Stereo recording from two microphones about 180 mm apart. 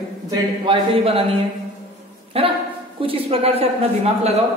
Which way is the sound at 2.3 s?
30° right (ahead or behind).